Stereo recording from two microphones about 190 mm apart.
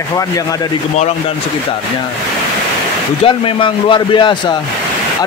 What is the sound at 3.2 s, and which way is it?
A man's voice, 25° left (ahead or behind).